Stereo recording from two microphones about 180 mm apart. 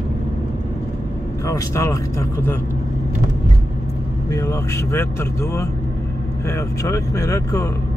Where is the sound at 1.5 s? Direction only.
15° left (ahead or behind).